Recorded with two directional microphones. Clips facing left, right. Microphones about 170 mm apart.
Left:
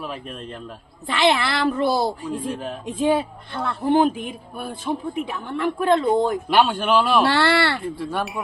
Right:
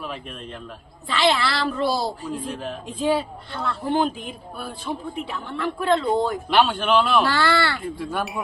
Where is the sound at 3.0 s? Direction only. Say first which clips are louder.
Left 2 dB; 20° left (ahead or behind).